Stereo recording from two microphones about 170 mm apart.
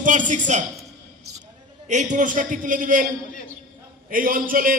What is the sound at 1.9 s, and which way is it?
A man's voice, 45° right (ahead or behind).